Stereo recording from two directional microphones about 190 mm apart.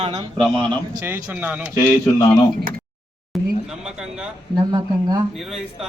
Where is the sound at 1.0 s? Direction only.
10° right (ahead or behind).